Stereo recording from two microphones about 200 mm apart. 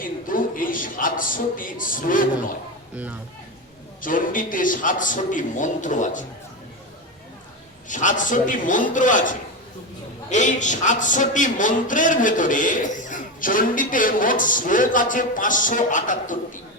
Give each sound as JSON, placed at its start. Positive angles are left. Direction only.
{"t": 0.0, "sound": "a sound", "side_deg": 45}
{"t": 2.9, "sound": "speech", "side_deg": -5}
{"t": 4.0, "sound": "a man's voice", "side_deg": 45}
{"t": 7.9, "sound": "a man's voice", "side_deg": 40}